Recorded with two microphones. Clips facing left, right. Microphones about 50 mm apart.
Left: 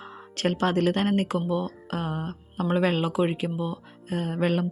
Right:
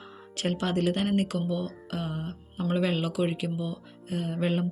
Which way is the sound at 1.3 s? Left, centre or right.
Left.